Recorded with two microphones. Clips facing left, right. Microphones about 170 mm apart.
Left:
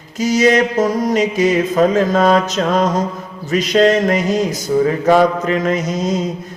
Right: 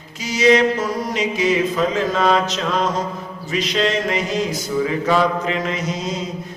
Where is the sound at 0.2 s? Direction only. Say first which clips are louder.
Left 2 dB; 45° left (ahead or behind).